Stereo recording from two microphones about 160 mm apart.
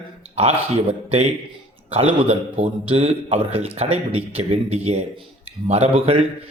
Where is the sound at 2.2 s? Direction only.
40° right (ahead or behind).